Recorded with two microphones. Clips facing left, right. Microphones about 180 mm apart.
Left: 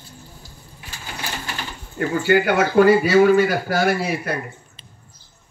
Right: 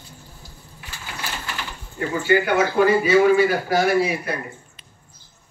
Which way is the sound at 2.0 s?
65° left (ahead or behind).